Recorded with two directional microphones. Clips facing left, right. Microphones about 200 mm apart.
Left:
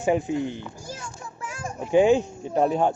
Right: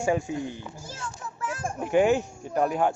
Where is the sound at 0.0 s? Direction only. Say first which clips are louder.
Left 3 dB; 20° left (ahead or behind).